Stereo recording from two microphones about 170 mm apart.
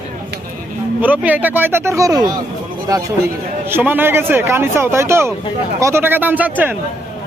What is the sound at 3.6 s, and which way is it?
Speech, 10° right (ahead or behind).